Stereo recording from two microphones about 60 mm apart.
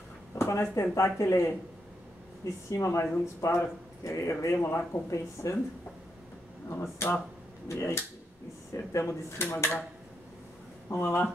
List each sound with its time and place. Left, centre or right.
0.4 s speech: left
2.7 s speech: left
5.1 s speech: left
6.7 s speech: left
11.0 s speech: left